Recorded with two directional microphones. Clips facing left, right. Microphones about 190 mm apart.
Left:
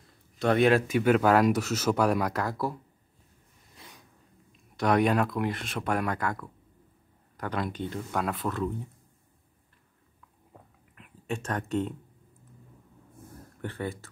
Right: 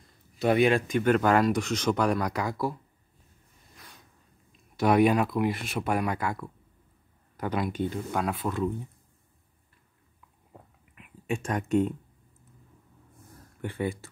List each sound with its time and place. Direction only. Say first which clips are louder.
0.4 s speech: even; 5° right (ahead or behind)
3.7 s a sound: left 2 dB; 20° left (ahead or behind)
4.5 s speech: right 2 dB; 5° right (ahead or behind)
11.0 s speech: right 3 dB; 10° right (ahead or behind)
13.6 s speech: right 3 dB; 15° right (ahead or behind)